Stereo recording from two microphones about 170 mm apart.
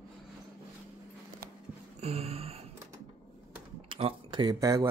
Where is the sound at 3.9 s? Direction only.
30° right (ahead or behind).